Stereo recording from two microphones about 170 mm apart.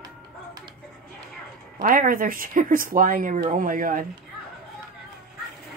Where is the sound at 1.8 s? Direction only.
55° right (ahead or behind).